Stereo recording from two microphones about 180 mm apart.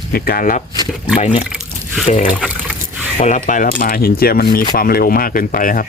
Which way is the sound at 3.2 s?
45° left (ahead or behind).